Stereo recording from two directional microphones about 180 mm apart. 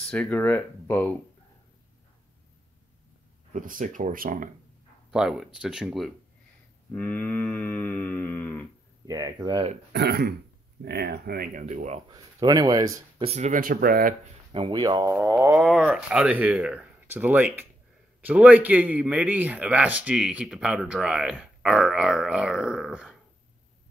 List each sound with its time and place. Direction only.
0.0 s cattle: 5° left (ahead or behind)
3.5 s speech: 45° right (ahead or behind)
5.1 s speech: 5° right (ahead or behind)
6.9 s cattle: 10° left (ahead or behind)
9.0 s speech: 20° right (ahead or behind)
9.9 s speech: 65° right (ahead or behind)
11.6 s speech: 40° right (ahead or behind)
12.1 s speech: 20° right (ahead or behind)
13.2 s speech: 40° right (ahead or behind); by 14.1 s 55° right (ahead or behind)
14.5 s speech: 25° right (ahead or behind)
15.6 s speech: 5° right (ahead or behind)